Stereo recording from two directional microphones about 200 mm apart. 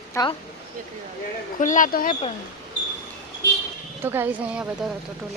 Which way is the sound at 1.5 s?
40° left (ahead or behind).